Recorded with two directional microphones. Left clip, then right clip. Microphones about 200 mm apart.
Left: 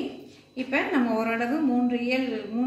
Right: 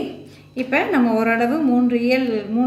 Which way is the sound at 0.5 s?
45° right (ahead or behind).